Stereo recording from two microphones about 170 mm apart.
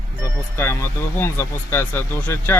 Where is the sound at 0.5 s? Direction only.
15° left (ahead or behind).